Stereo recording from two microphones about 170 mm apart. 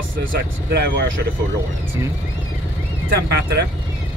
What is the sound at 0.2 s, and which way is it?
Speech, 70° right (ahead or behind).